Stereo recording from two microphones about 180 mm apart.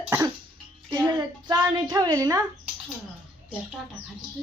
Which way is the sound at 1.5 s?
25° right (ahead or behind).